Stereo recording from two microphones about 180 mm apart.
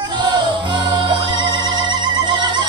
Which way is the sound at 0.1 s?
25° right (ahead or behind).